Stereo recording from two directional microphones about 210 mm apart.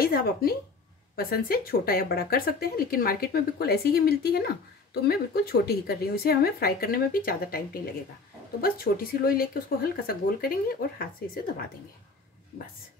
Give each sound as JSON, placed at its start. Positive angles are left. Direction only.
{"t": 0.0, "sound": "a woman's voice", "side_deg": 45}